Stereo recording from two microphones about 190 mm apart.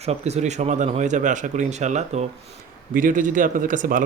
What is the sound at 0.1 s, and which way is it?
Speech, 35° right (ahead or behind).